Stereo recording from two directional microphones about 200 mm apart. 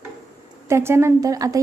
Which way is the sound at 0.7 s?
15° right (ahead or behind).